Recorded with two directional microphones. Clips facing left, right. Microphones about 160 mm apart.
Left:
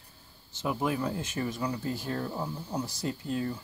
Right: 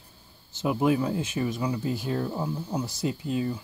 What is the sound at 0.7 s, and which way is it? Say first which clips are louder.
Speech: right 6 dB; 15° right (ahead or behind).